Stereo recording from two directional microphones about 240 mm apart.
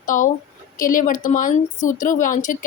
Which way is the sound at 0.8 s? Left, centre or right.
Left.